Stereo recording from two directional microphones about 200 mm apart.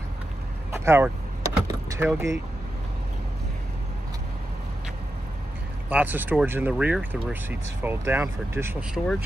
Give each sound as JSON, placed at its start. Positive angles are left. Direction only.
{"t": 0.7, "sound": "vehicle", "side_deg": -15}
{"t": 5.9, "sound": "speech", "side_deg": -10}